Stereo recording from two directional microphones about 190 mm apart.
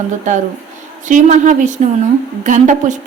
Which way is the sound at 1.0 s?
40° right (ahead or behind).